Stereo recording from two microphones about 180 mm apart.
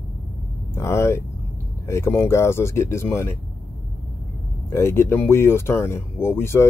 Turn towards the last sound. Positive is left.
turn(degrees=15)  # may be behind; listen again after turning